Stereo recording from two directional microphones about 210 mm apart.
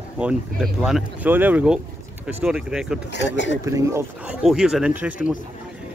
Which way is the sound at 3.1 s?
60° left (ahead or behind).